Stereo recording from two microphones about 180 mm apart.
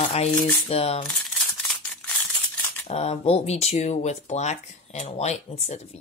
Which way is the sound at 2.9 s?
35° left (ahead or behind).